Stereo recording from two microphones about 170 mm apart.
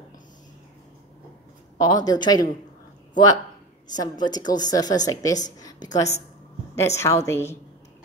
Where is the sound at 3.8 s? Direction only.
25° left (ahead or behind).